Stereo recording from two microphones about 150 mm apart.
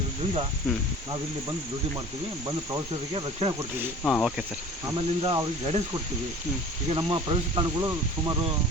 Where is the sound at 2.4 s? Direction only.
25° right (ahead or behind).